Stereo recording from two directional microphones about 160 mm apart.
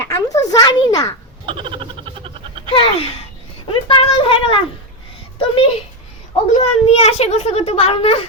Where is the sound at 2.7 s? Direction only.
35° left (ahead or behind).